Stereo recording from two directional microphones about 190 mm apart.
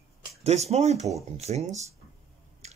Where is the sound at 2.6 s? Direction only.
35° right (ahead or behind).